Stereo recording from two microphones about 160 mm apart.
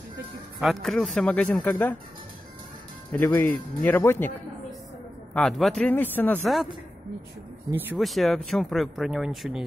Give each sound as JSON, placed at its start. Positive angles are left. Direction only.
{"t": 0.6, "sound": "speech", "side_deg": 0}
{"t": 3.1, "sound": "speech", "side_deg": 10}
{"t": 5.3, "sound": "speech", "side_deg": 0}
{"t": 6.4, "sound": "speech", "side_deg": 0}
{"t": 8.0, "sound": "speech", "side_deg": 0}